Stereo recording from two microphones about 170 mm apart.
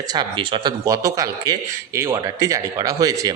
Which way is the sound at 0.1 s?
25° right (ahead or behind).